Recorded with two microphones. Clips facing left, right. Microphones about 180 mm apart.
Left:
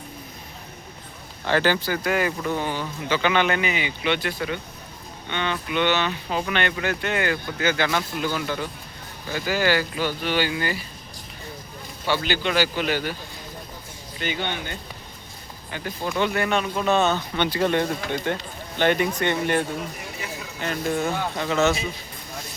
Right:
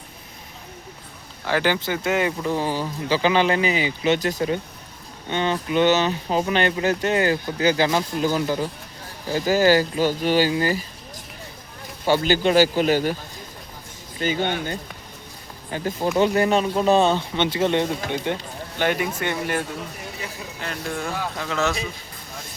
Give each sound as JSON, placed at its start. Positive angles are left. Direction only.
{"t": 1.5, "sound": "speech", "side_deg": -15}
{"t": 2.6, "sound": "speech", "side_deg": -35}
{"t": 12.0, "sound": "a man's voice", "side_deg": -45}
{"t": 14.2, "sound": "speech", "side_deg": -40}